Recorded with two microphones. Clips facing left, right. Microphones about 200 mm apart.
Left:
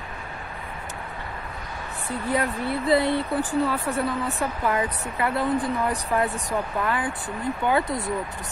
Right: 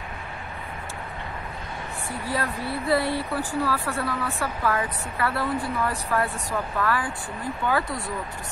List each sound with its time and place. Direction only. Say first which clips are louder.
2.0 s speech: left 4 dB; 20° left (ahead or behind)